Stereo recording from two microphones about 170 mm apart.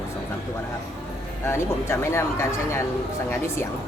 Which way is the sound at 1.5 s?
15° left (ahead or behind).